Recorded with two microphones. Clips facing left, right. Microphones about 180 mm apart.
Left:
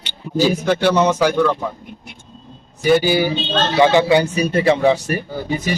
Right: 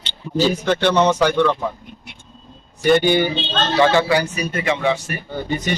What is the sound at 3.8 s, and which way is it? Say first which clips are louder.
Speech: left 3 dB; 15° left (ahead or behind).